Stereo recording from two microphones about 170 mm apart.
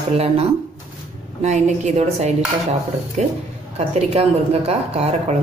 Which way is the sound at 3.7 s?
35° right (ahead or behind).